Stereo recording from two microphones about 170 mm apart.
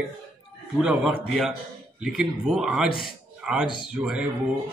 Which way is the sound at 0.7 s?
5° right (ahead or behind).